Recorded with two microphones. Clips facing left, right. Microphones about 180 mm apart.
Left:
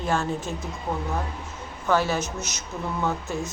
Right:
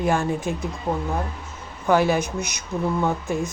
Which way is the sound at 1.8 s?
15° right (ahead or behind).